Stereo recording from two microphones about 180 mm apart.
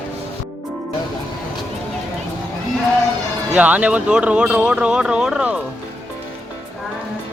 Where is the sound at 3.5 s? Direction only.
10° right (ahead or behind).